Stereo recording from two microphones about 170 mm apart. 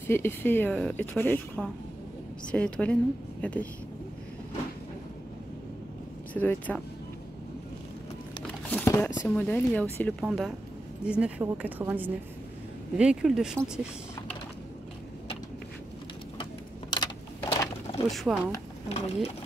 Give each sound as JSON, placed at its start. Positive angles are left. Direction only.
{"t": 0.0, "sound": "a woman's voice", "side_deg": 15}
{"t": 6.3, "sound": "a woman's voice", "side_deg": 10}
{"t": 8.6, "sound": "speech", "side_deg": 10}
{"t": 10.2, "sound": "a woman's voice", "side_deg": 0}
{"t": 16.9, "sound": "a sound", "side_deg": 25}
{"t": 18.1, "sound": "speech", "side_deg": 0}
{"t": 18.9, "sound": "speech", "side_deg": 35}